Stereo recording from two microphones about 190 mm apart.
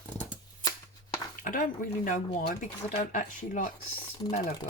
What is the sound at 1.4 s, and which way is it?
Speech, 45° left (ahead or behind).